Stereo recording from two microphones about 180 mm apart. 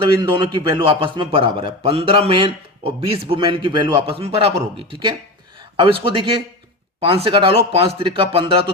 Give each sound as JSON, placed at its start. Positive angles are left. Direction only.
{"t": 0.0, "sound": "a man's voice", "side_deg": -25}